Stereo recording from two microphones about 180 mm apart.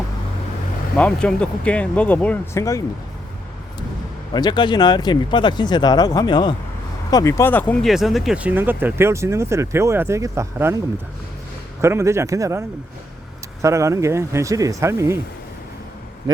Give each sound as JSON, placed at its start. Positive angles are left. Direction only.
{"t": 0.9, "sound": "speech", "side_deg": 5}
{"t": 4.4, "sound": "speech", "side_deg": 25}
{"t": 11.8, "sound": "speech", "side_deg": -15}